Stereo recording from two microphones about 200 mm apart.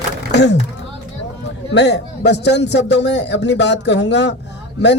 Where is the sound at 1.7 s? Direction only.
60° left (ahead or behind).